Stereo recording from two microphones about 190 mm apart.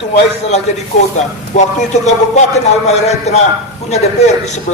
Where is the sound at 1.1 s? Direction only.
35° left (ahead or behind).